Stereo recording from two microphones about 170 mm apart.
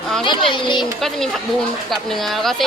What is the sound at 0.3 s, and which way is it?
Speech, 30° left (ahead or behind).